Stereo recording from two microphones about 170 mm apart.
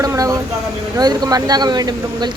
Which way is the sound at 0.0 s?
20° right (ahead or behind).